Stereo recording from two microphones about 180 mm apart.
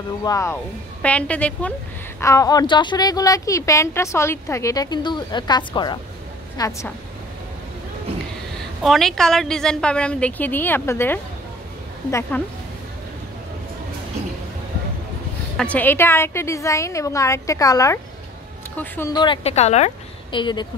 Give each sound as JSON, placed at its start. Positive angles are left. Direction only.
{"t": 0.2, "sound": "a woman's voice", "side_deg": 15}
{"t": 1.0, "sound": "a woman's voice", "side_deg": 5}
{"t": 2.1, "sound": "a woman's voice", "side_deg": 15}
{"t": 8.8, "sound": "a woman's voice", "side_deg": 0}
{"t": 15.5, "sound": "a woman's voice", "side_deg": 5}
{"t": 19.1, "sound": "a woman's voice", "side_deg": 25}